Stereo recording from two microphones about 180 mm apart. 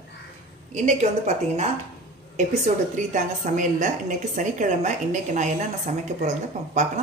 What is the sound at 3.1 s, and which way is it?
A woman's voice, 45° right (ahead or behind).